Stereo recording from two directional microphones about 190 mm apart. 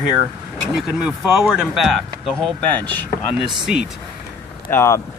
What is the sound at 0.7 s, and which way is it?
Speech, 5° right (ahead or behind).